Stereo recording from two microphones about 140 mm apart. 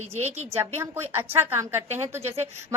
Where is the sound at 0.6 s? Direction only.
15° right (ahead or behind).